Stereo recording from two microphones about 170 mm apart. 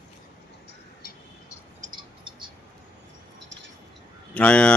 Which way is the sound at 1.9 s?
30° right (ahead or behind).